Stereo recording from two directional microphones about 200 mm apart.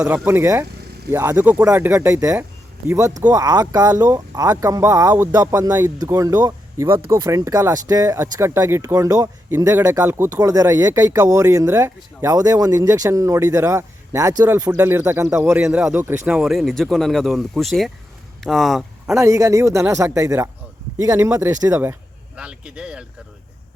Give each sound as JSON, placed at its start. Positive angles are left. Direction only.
{"t": 0.0, "sound": "speech", "side_deg": -15}
{"t": 19.1, "sound": "speech", "side_deg": -15}